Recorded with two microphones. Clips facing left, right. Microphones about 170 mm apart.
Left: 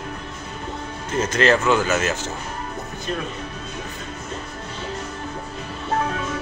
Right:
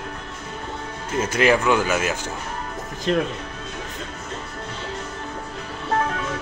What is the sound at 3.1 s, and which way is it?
Speech, 90° right.